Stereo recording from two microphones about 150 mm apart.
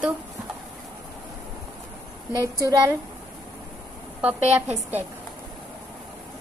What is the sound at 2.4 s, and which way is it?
Speech, 20° right (ahead or behind).